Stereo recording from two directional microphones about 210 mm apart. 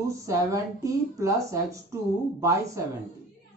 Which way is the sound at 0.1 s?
15° right (ahead or behind).